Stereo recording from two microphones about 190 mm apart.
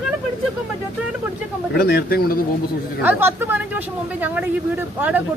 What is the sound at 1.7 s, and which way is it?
Speech, 55° left (ahead or behind).